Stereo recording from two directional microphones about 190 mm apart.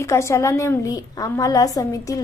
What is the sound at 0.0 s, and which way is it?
A woman's voice, 15° left (ahead or behind).